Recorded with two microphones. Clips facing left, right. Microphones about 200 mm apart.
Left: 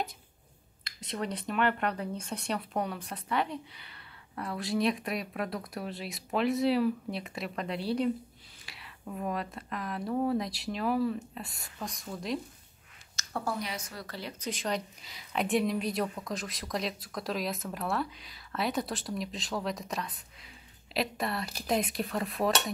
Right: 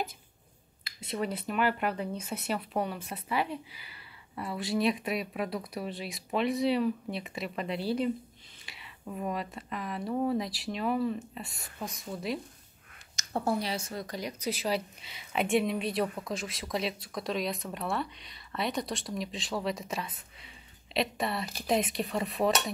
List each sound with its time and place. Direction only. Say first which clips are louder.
0.8 s speech: right 2 dB; 5° right (ahead or behind)
13.1 s a woman's voice: right 4 dB; 20° right (ahead or behind); by 22.5 s centre (ahead or behind)